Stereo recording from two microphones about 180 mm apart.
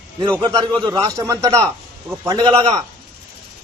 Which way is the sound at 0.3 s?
25° right (ahead or behind).